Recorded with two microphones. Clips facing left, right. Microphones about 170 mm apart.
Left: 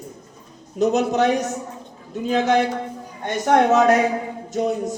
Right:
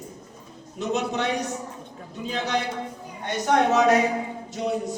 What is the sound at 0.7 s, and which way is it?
Speech, 40° left (ahead or behind).